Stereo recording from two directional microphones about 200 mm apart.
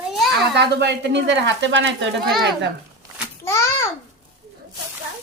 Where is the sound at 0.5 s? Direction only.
60° right (ahead or behind).